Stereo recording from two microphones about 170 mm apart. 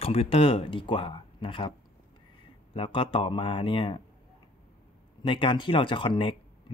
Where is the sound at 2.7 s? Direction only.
30° left (ahead or behind).